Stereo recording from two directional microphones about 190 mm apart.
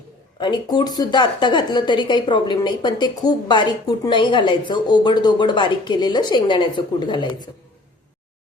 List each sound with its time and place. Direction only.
0.3 s a woman's voice: 25° left (ahead or behind)